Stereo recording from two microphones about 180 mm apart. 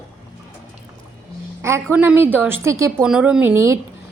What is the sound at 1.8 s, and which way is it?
A woman's voice, 5° right (ahead or behind).